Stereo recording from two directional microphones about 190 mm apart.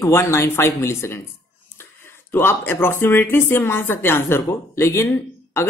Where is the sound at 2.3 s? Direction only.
10° left (ahead or behind).